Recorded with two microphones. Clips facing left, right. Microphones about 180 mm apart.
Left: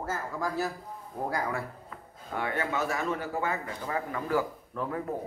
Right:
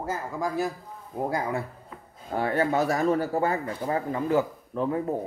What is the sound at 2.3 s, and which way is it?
Speech, 35° right (ahead or behind).